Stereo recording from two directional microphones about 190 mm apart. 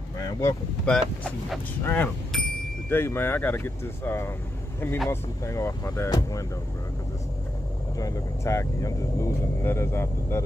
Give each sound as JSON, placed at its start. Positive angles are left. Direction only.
{"t": 0.4, "sound": "speech", "side_deg": 15}
{"t": 0.9, "sound": "speech", "side_deg": 0}
{"t": 8.0, "sound": "speech", "side_deg": 15}